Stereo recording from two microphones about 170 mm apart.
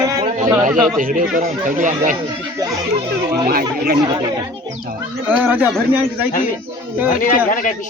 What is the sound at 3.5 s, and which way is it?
Speech, 60° right (ahead or behind).